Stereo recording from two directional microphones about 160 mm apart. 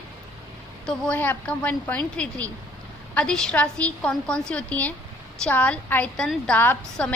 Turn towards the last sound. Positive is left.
turn(degrees=10)  # may be behind; listen again after turning